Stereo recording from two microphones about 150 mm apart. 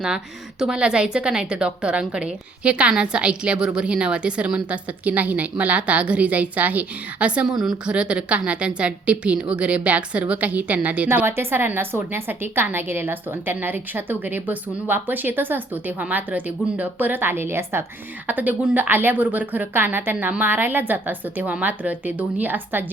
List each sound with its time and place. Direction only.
0.6 s a woman's voice: 5° right (ahead or behind)